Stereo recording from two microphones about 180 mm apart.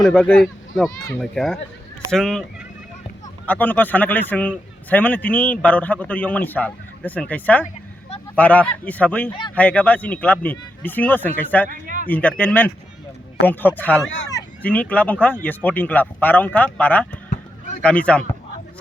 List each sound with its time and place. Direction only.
0.0 s a child's voice: 5° left (ahead or behind)
3.4 s a man's voice: 10° left (ahead or behind)
11.7 s a sound: 45° right (ahead or behind)
12.0 s a man's voice: 10° left (ahead or behind)